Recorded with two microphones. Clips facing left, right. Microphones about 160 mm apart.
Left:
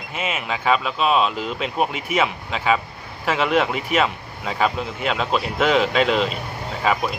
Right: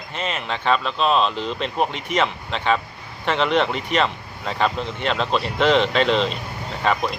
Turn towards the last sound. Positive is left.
turn(degrees=5)  # may be behind; listen again after turning